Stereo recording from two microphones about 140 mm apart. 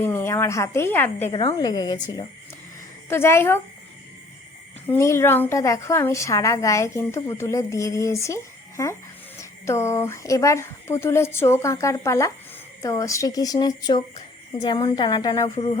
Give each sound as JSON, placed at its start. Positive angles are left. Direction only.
{"t": 0.0, "sound": "a woman's voice", "side_deg": 15}
{"t": 1.3, "sound": "a woman's voice", "side_deg": 30}
{"t": 3.1, "sound": "speech", "side_deg": 15}
{"t": 4.9, "sound": "a woman's voice", "side_deg": 20}
{"t": 15.5, "sound": "a woman's voice", "side_deg": 40}